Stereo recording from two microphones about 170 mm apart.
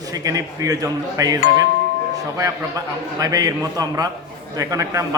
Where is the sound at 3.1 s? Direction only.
20° right (ahead or behind).